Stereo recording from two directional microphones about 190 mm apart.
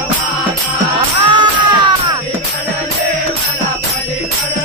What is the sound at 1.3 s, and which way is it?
Music, 25° right (ahead or behind).